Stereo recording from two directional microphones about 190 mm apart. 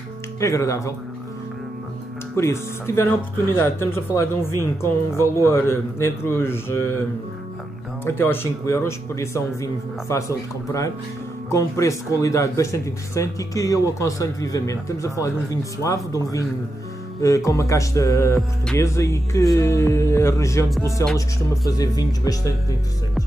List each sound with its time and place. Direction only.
0.4 s speech: 15° left (ahead or behind)
2.3 s speech: 15° left (ahead or behind)
8.0 s speech: 10° left (ahead or behind)
17.5 s speech: 15° left (ahead or behind)